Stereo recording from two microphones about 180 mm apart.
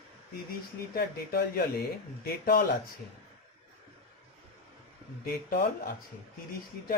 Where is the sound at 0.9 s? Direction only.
55° left (ahead or behind).